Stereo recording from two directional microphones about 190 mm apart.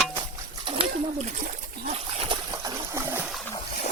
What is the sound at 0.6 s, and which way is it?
Splash, 30° right (ahead or behind).